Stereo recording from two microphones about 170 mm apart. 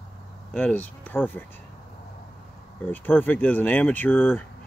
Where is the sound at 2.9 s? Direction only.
10° left (ahead or behind).